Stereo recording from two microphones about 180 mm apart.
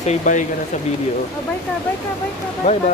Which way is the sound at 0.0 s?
40° left (ahead or behind).